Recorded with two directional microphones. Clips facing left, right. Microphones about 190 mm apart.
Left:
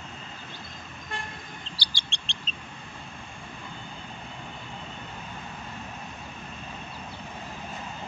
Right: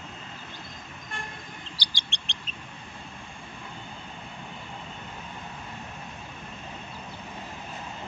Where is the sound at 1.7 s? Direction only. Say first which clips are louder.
Even; 15° right (ahead or behind).